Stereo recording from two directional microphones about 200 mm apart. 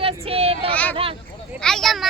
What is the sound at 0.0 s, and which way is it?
Child singing, 30° right (ahead or behind).